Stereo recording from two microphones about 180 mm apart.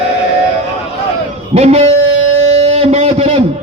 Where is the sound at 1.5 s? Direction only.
35° right (ahead or behind).